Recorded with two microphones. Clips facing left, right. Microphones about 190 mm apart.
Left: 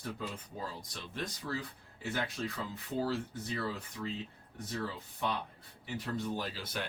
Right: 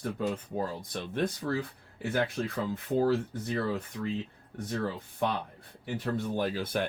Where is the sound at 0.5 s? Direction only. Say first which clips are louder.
Right 9 dB; 55° right (ahead or behind).